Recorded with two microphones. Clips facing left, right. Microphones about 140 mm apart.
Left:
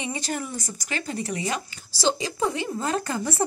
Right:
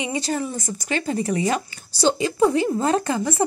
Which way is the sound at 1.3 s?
35° right (ahead or behind).